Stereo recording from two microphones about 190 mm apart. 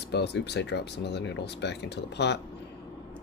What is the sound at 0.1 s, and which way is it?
Speech, 60° left (ahead or behind).